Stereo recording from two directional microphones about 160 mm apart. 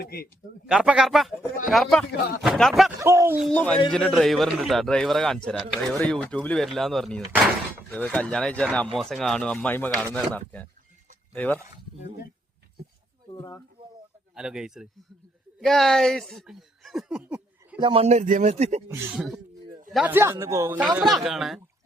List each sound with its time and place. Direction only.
0.0 s speech: 80° left
0.7 s a man's voice: 5° right (ahead or behind)
3.0 s speech: 15° right (ahead or behind)
3.5 s a man's voice: 10° left (ahead or behind)
13.3 s speech: 20° left (ahead or behind)
14.3 s a man's voice: 5° right (ahead or behind)
17.7 s speech: 35° right (ahead or behind)
19.1 s a man's voice: centre (ahead or behind)